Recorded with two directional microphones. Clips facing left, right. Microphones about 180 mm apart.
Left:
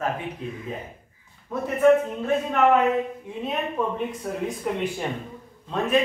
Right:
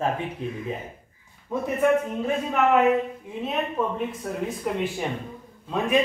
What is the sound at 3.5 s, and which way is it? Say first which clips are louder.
Speech: even; centre (ahead or behind).